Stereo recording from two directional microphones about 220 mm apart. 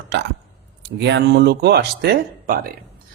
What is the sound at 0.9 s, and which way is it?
A man's voice, 50° right (ahead or behind).